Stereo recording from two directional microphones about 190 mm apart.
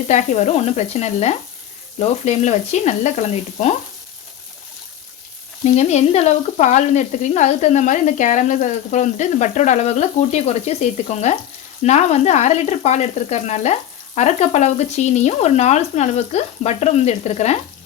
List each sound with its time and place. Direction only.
0.1 s frying: 40° left (ahead or behind)
5.6 s frying: 35° left (ahead or behind)